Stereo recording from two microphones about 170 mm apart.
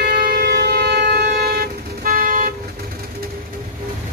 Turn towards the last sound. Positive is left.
turn(degrees=-55)  # may be behind; listen again after turning